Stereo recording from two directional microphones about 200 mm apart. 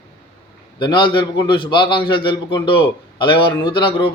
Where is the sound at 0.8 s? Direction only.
25° left (ahead or behind).